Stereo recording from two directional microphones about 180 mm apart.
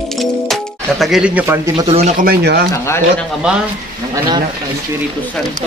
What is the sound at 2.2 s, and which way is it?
Speech, 65° right (ahead or behind).